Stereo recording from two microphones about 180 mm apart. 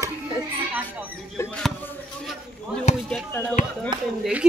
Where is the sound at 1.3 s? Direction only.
15° left (ahead or behind).